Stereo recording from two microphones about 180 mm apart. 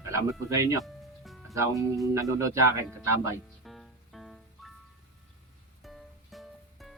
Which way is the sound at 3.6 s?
Centre (ahead or behind).